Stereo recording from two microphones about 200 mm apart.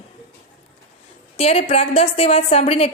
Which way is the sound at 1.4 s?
30° left (ahead or behind).